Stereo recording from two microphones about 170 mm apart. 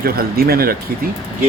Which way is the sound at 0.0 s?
65° right (ahead or behind).